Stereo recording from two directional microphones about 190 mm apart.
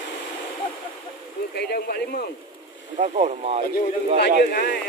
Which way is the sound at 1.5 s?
55° left (ahead or behind).